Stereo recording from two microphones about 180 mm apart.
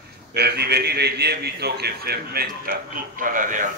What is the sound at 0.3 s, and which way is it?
A man's voice, 65° right (ahead or behind).